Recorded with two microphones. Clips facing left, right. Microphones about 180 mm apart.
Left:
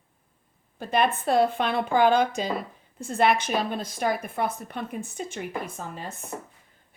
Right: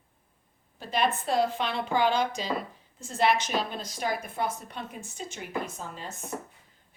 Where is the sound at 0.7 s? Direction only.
55° left (ahead or behind).